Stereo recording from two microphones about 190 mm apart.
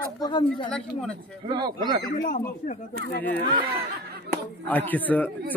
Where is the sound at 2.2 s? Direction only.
45° left (ahead or behind).